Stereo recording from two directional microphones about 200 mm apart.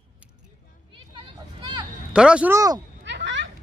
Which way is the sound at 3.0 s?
65° right (ahead or behind).